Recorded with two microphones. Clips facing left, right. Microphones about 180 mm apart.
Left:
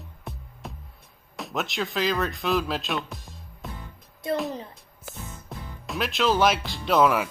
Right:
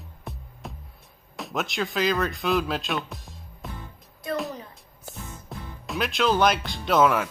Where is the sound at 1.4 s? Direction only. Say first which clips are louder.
Right 1 dB; centre (ahead or behind).